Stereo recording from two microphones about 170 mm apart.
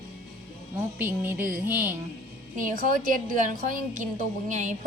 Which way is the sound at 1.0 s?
10° right (ahead or behind).